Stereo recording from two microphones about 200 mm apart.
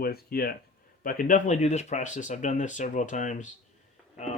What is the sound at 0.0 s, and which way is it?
Speech, 50° left (ahead or behind).